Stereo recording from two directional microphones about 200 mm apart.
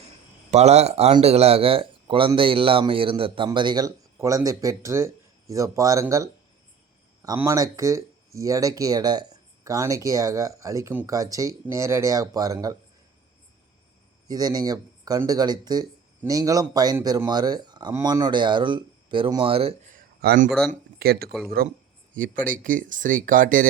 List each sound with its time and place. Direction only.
0.5 s speech: 35° right (ahead or behind); by 12.7 s 20° right (ahead or behind)
14.3 s speech: 20° right (ahead or behind)
19.9 s a sound: 40° right (ahead or behind)
20.5 s speech: centre (ahead or behind)
21.0 s speech: 50° right (ahead or behind)